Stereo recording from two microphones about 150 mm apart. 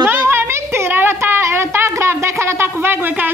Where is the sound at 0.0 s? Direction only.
15° right (ahead or behind).